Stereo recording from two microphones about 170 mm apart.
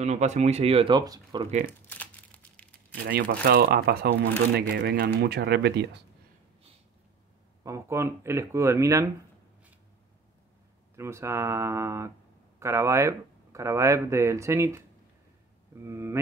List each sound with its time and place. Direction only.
0.0 s speech: 40° right (ahead or behind); by 1.5 s 25° right (ahead or behind)
1.9 s crumpling: 10° left (ahead or behind)
3.4 s speech: 65° right (ahead or behind)
7.6 s speech: 15° right (ahead or behind)
11.0 s speech: 15° right (ahead or behind)